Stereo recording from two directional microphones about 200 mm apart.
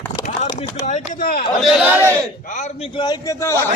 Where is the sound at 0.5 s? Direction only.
35° left (ahead or behind).